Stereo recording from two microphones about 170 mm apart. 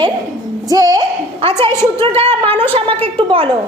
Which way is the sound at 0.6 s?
20° right (ahead or behind).